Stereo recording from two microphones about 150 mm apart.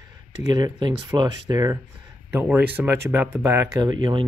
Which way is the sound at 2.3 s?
10° right (ahead or behind).